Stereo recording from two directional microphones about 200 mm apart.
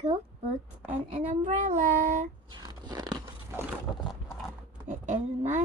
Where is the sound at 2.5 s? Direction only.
20° right (ahead or behind).